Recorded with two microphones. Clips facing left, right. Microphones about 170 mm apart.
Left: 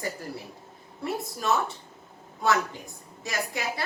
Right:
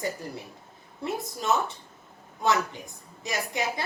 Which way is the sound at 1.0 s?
20° right (ahead or behind).